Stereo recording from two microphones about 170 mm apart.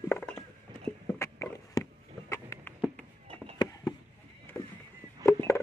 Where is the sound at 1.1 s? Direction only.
15° left (ahead or behind).